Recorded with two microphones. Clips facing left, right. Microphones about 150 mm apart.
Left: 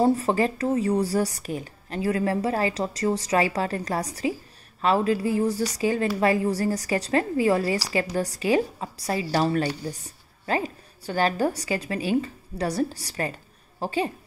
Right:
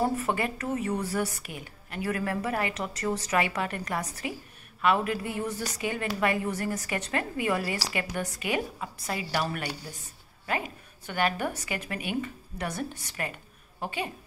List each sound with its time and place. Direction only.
0.0 s a woman's voice: 30° left (ahead or behind)